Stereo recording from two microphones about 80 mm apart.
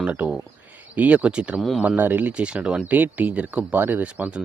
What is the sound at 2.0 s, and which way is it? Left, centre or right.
Speech, right.